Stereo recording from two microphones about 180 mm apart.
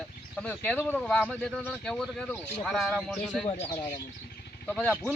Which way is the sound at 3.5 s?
35° left (ahead or behind).